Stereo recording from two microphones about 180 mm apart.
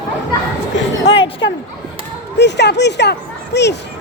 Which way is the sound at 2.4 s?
70° left (ahead or behind).